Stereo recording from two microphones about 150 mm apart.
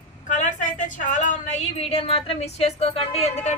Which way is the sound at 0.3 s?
60° left (ahead or behind).